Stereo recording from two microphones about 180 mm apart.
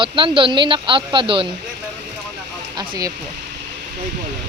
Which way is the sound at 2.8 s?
20° right (ahead or behind).